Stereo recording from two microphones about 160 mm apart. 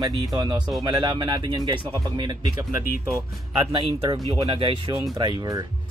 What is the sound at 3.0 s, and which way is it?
Speech, 15° right (ahead or behind).